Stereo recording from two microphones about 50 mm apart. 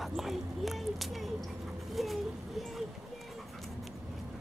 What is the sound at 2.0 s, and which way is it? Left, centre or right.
Speech, centre.